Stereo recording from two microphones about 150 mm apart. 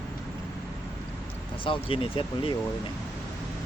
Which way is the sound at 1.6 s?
35° left (ahead or behind).